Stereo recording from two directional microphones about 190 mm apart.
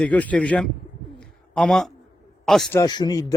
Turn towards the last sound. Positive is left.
turn(degrees=20)  # may be behind; listen again after turning